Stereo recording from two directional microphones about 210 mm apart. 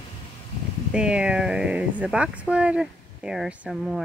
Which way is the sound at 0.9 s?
5° right (ahead or behind).